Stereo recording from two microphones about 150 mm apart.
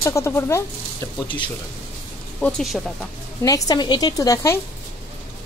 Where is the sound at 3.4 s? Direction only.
25° left (ahead or behind).